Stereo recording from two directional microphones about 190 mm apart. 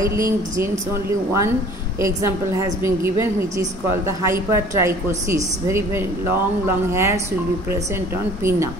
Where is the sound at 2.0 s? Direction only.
15° right (ahead or behind).